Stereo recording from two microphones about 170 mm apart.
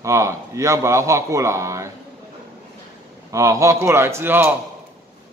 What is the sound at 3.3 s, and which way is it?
A man's voice, 20° right (ahead or behind).